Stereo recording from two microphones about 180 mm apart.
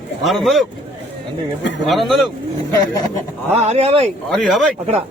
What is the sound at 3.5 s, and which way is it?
Speech, 35° right (ahead or behind).